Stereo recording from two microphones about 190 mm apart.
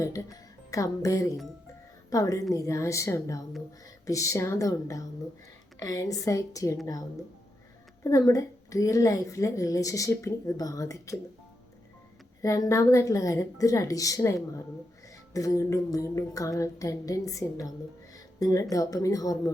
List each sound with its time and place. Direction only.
0.0 s speech: 15° left (ahead or behind)
8.0 s speech: 20° left (ahead or behind)
12.4 s speech: 15° left (ahead or behind)